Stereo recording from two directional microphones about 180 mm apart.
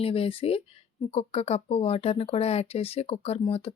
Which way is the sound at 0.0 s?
30° left (ahead or behind).